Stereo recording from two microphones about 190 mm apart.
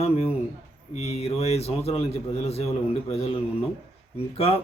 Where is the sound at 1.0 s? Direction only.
30° left (ahead or behind).